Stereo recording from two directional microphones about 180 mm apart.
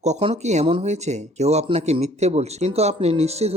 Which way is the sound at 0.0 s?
35° right (ahead or behind).